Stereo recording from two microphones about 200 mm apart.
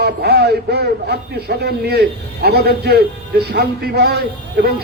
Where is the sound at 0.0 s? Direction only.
55° right (ahead or behind).